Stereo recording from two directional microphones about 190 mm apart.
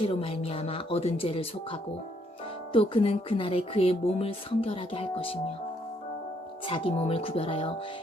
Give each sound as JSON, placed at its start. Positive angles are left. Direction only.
{"t": 0.0, "sound": "speech", "side_deg": 30}
{"t": 6.7, "sound": "speech", "side_deg": 30}